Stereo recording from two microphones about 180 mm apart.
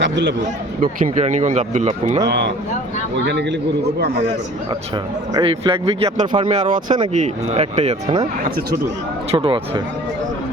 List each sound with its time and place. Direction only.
0.0 s a man's voice: 75° right (ahead or behind)
0.8 s speech: 45° right (ahead or behind)
5.3 s speech: 25° right (ahead or behind)
9.3 s speech: 30° right (ahead or behind)